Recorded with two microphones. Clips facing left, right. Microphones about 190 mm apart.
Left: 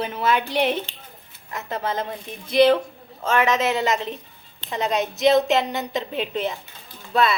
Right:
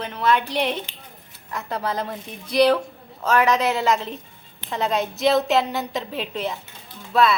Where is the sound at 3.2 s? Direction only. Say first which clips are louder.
Right 1 dB; centre (ahead or behind).